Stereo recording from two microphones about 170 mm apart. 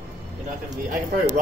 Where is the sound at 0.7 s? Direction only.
50° right (ahead or behind).